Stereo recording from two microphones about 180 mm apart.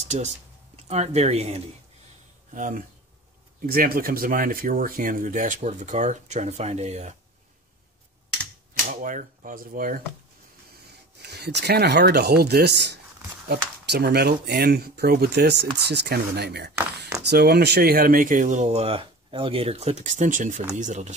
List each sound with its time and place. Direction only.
0.1 s speech: 35° right (ahead or behind)
9.0 s speech: 50° right (ahead or behind)
11.2 s speech: 65° right (ahead or behind); by 21.1 s 40° right (ahead or behind)